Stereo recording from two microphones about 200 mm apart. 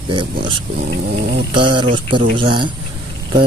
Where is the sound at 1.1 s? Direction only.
55° right (ahead or behind).